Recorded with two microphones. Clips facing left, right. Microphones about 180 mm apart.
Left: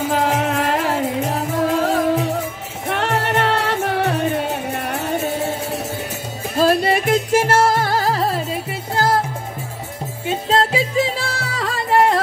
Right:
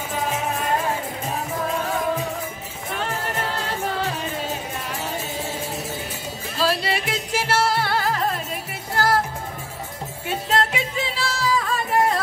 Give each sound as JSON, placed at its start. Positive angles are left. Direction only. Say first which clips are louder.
{"t": 0.1, "sound": "music", "louder": "left 5 dB", "side_deg": 90}
{"t": 6.5, "sound": "music", "louder": "left 8 dB", "side_deg": 50}
{"t": 10.2, "sound": "music", "louder": "left 4 dB", "side_deg": 30}